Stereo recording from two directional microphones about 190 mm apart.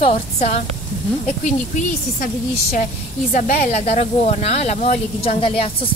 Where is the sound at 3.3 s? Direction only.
40° left (ahead or behind).